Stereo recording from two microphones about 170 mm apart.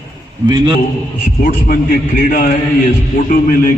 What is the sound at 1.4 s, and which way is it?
A man's voice, 55° left (ahead or behind).